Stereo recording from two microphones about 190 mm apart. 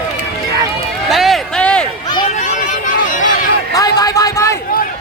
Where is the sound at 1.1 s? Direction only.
Centre (ahead or behind).